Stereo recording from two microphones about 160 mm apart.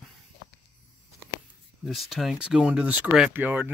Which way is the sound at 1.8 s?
Centre (ahead or behind).